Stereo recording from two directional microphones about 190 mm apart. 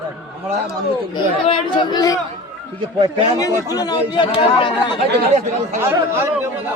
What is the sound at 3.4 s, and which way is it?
Speech, 20° left (ahead or behind).